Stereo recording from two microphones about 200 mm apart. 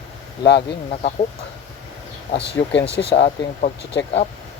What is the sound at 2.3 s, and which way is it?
Speech, 60° left (ahead or behind).